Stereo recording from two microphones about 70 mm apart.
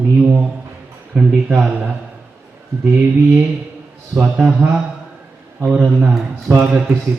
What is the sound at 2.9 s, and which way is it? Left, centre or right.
Mantra, right.